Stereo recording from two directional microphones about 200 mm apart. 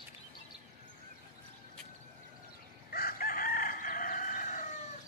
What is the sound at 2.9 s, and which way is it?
Chicken, 45° left (ahead or behind).